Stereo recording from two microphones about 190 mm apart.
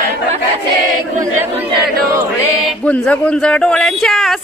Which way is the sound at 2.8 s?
5° left (ahead or behind).